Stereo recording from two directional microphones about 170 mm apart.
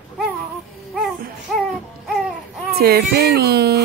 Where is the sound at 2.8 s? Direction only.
65° right (ahead or behind).